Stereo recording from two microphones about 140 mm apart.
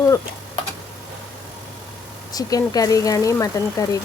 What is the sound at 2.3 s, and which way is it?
A woman's voice, 25° left (ahead or behind).